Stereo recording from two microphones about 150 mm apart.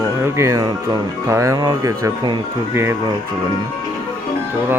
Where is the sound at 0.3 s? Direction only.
20° right (ahead or behind).